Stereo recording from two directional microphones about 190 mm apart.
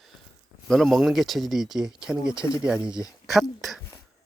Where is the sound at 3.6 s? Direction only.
Centre (ahead or behind).